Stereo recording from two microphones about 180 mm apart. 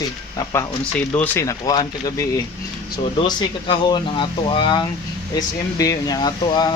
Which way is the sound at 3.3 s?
25° left (ahead or behind).